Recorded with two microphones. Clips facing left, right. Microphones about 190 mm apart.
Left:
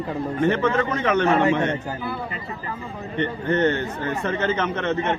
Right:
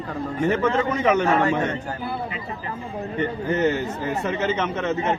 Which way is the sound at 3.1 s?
5° right (ahead or behind).